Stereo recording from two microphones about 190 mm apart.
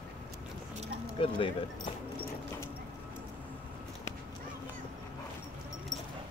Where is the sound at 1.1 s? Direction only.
30° left (ahead or behind).